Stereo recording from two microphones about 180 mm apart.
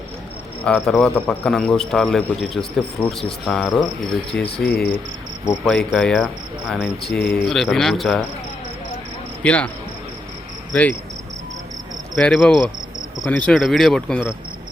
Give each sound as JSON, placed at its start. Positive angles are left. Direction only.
{"t": 0.6, "sound": "a man's voice", "side_deg": 5}
{"t": 4.6, "sound": "speech", "side_deg": 60}
{"t": 5.6, "sound": "a man's voice", "side_deg": 5}
{"t": 9.4, "sound": "speech", "side_deg": 5}
{"t": 12.1, "sound": "a man's voice", "side_deg": 5}
{"t": 13.5, "sound": "a man's voice", "side_deg": 0}